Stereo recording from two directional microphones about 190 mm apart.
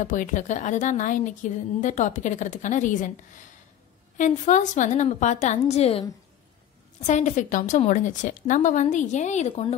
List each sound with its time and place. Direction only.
0.0 s a woman's voice: 40° left (ahead or behind)
7.1 s a woman's voice: 40° left (ahead or behind)